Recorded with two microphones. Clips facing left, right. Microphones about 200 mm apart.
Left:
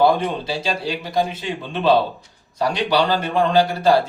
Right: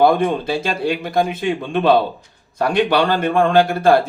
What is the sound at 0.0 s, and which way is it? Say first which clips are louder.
A man's voice: right 3 dB; 55° right (ahead or behind).